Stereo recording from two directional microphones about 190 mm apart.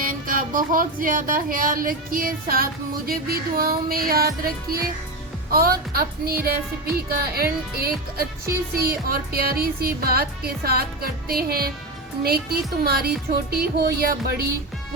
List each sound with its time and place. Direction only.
0.0 s music: 45° right (ahead or behind)
12.2 s speech: 55° right (ahead or behind)